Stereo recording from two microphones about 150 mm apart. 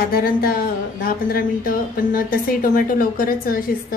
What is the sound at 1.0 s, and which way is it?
A woman's voice, 70° left (ahead or behind).